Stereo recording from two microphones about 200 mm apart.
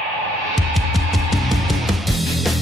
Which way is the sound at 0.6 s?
Centre (ahead or behind).